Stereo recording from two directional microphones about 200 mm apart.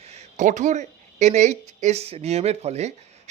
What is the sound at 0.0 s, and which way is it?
Speech, 35° right (ahead or behind).